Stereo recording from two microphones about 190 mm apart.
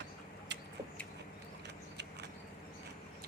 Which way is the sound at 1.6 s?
60° right (ahead or behind).